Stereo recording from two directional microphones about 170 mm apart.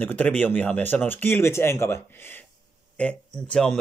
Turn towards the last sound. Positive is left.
turn(degrees=5)  # may be behind; listen again after turning